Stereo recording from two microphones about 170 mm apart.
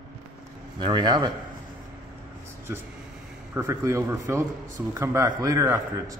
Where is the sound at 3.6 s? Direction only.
15° right (ahead or behind).